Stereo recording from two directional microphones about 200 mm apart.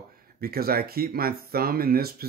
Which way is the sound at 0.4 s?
50° right (ahead or behind).